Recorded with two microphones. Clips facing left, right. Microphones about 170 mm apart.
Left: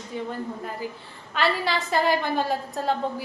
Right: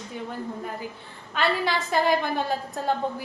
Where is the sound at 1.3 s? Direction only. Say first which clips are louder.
Even; centre (ahead or behind).